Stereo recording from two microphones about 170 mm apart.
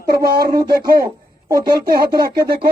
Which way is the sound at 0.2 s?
65° right (ahead or behind).